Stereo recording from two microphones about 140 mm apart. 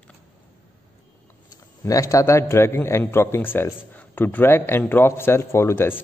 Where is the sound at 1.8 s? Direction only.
25° left (ahead or behind).